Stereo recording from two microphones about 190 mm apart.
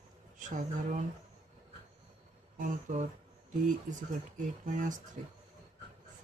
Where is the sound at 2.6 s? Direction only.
40° right (ahead or behind).